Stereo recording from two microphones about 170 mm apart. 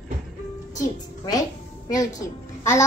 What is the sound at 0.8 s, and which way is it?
A woman's voice, 20° left (ahead or behind).